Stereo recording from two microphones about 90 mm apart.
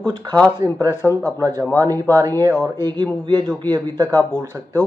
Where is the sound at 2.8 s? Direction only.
55° right (ahead or behind).